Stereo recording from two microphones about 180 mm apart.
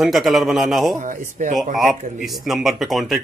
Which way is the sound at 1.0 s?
45° right (ahead or behind).